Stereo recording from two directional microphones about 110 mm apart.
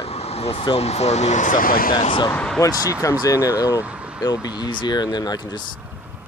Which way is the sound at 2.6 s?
30° left (ahead or behind).